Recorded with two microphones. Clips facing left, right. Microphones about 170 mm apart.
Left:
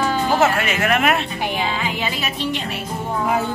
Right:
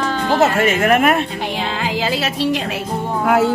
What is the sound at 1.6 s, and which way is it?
Speech, 90° right.